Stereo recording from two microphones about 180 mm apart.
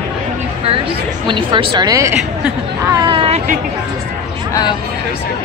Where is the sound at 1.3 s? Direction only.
30° right (ahead or behind).